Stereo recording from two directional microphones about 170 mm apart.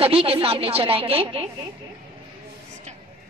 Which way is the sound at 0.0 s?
35° right (ahead or behind).